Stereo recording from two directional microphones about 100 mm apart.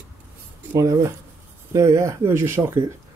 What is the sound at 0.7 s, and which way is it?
Speech, 30° right (ahead or behind).